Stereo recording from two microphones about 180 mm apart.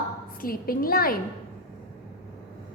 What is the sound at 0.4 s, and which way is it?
Speech, 55° left (ahead or behind).